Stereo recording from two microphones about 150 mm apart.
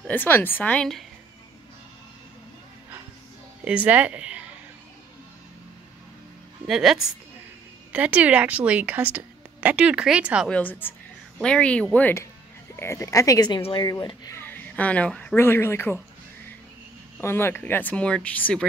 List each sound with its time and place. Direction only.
0.0 s speech: 10° left (ahead or behind)
3.6 s a woman's voice: 10° right (ahead or behind)
6.7 s a woman's voice: 5° right (ahead or behind)
10.5 s speech: 10° left (ahead or behind)
13.6 s speech: 35° left (ahead or behind)
13.8 s speech: 25° left (ahead or behind)
14.4 s speech: 10° left (ahead or behind)
17.2 s speech: 15° left (ahead or behind)